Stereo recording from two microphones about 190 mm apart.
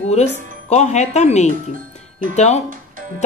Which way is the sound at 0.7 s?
35° left (ahead or behind).